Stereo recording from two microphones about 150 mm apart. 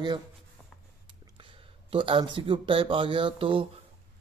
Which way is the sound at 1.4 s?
35° right (ahead or behind).